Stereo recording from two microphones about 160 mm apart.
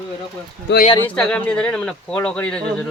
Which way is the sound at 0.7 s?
90° left.